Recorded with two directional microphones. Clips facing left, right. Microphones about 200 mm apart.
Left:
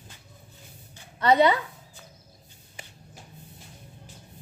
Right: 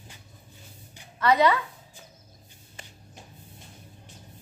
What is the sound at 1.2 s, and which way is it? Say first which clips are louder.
Speech: left 1 dB; 30° left (ahead or behind).